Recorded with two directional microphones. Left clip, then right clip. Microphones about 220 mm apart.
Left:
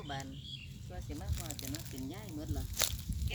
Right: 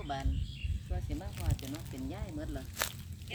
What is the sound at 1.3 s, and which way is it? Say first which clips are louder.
Speech: right 1 dB; 40° left (ahead or behind).